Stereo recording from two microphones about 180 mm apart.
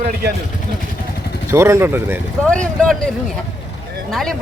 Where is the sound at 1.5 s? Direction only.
15° right (ahead or behind).